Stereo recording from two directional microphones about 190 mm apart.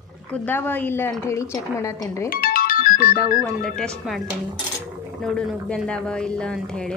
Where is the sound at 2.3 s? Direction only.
50° left (ahead or behind).